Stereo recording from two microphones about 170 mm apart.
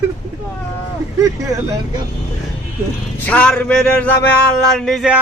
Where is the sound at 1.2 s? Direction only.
20° right (ahead or behind).